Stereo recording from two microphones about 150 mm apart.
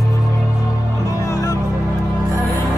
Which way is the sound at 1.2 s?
25° left (ahead or behind).